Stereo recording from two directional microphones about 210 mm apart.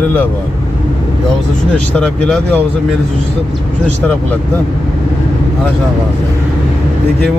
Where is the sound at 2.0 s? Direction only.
5° left (ahead or behind).